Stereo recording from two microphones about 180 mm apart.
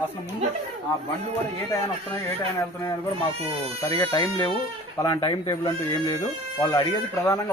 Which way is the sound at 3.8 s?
20° left (ahead or behind).